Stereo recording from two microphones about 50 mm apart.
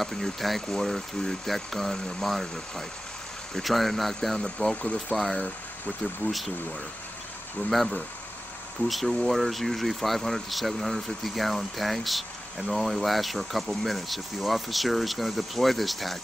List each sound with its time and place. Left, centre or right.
0.0 s speech: centre
6.2 s speech: left
8.8 s speech: centre